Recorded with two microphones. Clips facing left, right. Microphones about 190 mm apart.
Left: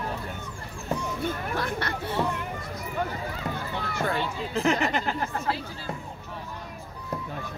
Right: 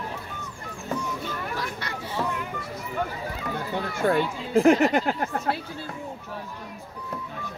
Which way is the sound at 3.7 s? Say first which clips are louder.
Right 7 dB; 50° right (ahead or behind).